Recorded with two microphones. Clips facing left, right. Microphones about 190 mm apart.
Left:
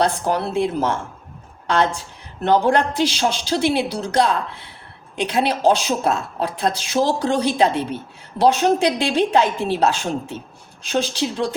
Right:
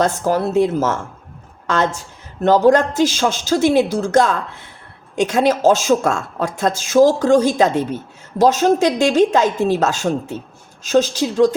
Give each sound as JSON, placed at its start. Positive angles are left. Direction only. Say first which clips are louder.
{"t": 0.0, "sound": "a woman's voice", "louder": "right 3 dB", "side_deg": -45}